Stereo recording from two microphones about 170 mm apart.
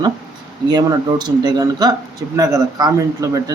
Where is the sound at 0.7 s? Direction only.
25° right (ahead or behind).